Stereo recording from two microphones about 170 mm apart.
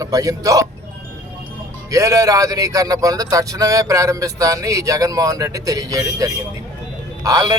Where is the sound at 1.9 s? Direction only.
20° right (ahead or behind).